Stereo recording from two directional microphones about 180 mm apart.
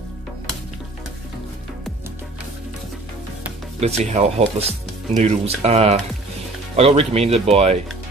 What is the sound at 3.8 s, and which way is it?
Speech, 35° right (ahead or behind).